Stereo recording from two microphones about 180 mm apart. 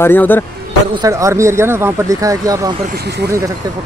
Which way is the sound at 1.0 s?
15° right (ahead or behind).